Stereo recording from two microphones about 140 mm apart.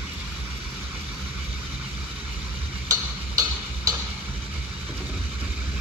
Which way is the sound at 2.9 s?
25° right (ahead or behind).